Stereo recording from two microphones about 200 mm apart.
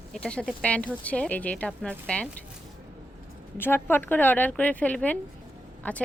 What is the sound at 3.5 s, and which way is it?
A woman's voice, 10° left (ahead or behind).